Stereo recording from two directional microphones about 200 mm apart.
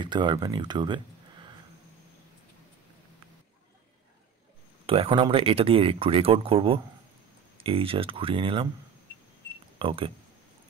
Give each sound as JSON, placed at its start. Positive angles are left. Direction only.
{"t": 0.0, "sound": "speech", "side_deg": -25}
{"t": 4.8, "sound": "speech", "side_deg": -30}
{"t": 9.8, "sound": "speech", "side_deg": -25}